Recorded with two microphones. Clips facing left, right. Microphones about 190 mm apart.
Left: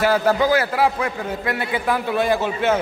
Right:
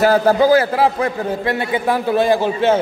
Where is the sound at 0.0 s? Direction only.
35° right (ahead or behind).